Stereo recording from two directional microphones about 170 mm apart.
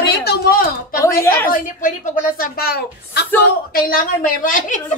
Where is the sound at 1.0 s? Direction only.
15° left (ahead or behind).